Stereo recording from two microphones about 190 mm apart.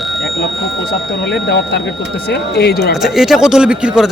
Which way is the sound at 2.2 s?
55° left (ahead or behind).